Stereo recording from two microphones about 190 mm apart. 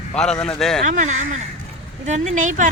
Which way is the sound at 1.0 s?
40° right (ahead or behind).